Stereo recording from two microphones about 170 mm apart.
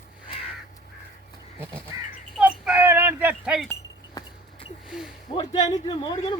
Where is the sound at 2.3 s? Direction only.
5° right (ahead or behind).